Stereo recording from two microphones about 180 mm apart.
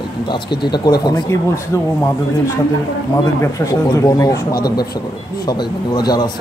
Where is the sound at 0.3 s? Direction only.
25° left (ahead or behind).